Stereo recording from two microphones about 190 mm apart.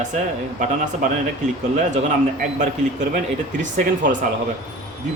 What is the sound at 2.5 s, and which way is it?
Speech, 40° right (ahead or behind).